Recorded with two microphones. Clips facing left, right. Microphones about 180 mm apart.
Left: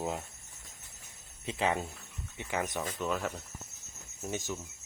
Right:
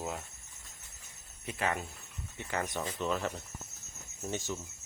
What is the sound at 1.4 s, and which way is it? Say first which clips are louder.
Speech: left 3 dB; 25° left (ahead or behind).